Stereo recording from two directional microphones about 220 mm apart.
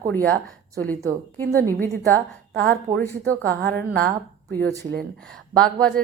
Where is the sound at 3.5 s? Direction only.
45° right (ahead or behind).